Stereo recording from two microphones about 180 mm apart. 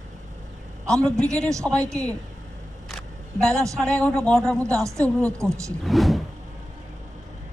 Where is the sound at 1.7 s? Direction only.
5° left (ahead or behind).